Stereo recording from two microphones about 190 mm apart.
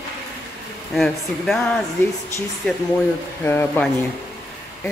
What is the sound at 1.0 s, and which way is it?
Speech, centre (ahead or behind).